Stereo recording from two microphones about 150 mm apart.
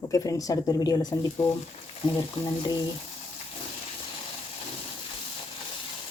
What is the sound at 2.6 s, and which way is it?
Speech, 30° left (ahead or behind).